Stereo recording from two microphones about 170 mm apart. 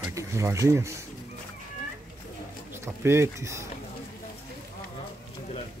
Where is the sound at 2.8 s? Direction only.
15° right (ahead or behind).